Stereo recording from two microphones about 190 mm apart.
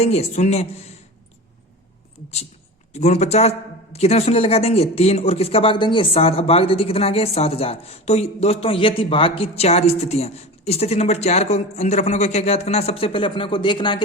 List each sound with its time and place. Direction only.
0.0 s speech: 35° left (ahead or behind)
2.9 s speech: 35° left (ahead or behind)